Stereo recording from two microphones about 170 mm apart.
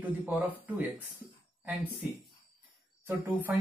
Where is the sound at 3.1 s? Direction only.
10° right (ahead or behind).